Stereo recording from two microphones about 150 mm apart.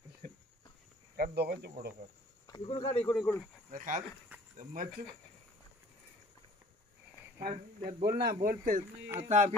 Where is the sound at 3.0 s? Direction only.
15° left (ahead or behind).